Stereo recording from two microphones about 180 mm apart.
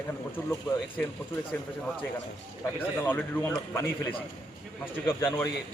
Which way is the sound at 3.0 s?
10° left (ahead or behind).